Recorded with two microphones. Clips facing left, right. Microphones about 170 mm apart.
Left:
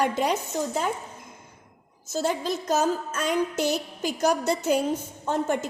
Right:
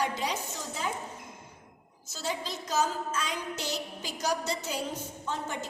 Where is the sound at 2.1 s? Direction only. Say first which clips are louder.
Left 9 dB; 50° left (ahead or behind).